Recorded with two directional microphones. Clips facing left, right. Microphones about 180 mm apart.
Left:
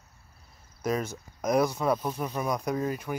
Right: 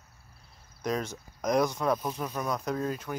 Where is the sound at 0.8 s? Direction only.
5° left (ahead or behind).